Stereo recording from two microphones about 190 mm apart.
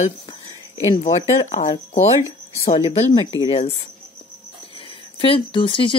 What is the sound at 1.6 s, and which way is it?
Speech, 45° left (ahead or behind).